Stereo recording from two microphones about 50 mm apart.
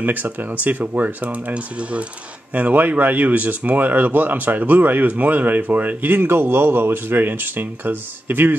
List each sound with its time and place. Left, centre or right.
0.0 s speech: right